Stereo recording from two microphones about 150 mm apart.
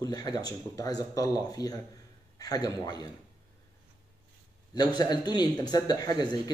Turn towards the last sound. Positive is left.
turn(degrees=25)  # may be behind; listen again after turning